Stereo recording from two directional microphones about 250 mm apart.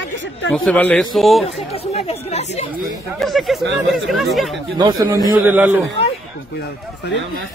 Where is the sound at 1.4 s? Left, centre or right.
Left.